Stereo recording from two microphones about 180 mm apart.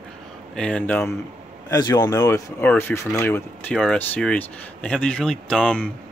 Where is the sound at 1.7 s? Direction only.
20° left (ahead or behind).